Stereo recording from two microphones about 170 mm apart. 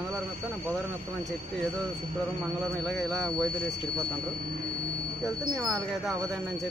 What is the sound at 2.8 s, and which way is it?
Speech, 5° left (ahead or behind).